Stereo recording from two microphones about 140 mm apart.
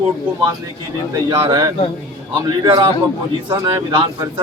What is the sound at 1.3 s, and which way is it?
Speech, 25° right (ahead or behind).